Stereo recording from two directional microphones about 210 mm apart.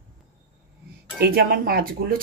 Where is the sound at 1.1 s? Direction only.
45° right (ahead or behind).